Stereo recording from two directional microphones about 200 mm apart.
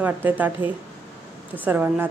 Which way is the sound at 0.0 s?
10° right (ahead or behind).